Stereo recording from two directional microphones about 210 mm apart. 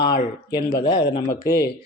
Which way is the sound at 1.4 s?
45° left (ahead or behind).